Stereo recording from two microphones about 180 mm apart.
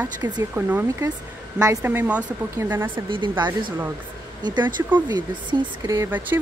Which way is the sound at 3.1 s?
25° right (ahead or behind).